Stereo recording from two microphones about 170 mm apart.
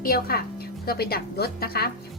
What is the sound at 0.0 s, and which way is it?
A woman's voice, 60° left (ahead or behind).